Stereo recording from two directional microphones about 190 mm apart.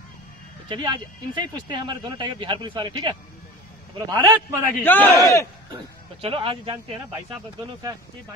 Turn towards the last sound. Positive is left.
turn(degrees=-25)  # may be behind; listen again after turning